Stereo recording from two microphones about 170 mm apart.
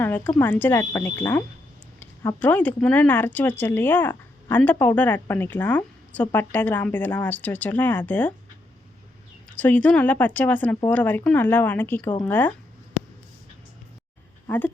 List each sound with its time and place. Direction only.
0.0 s a woman's voice: 10° left (ahead or behind)
9.6 s a woman's voice: 10° left (ahead or behind)
14.4 s speech: 10° left (ahead or behind)